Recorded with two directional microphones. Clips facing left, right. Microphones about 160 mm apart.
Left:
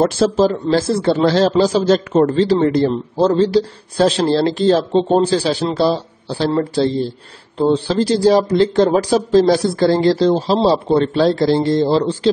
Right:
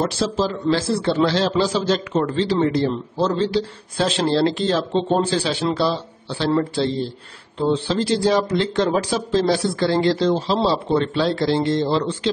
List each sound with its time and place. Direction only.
0.0 s speech: 45° left (ahead or behind)